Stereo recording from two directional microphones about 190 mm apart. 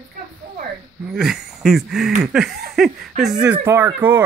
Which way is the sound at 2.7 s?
Centre (ahead or behind).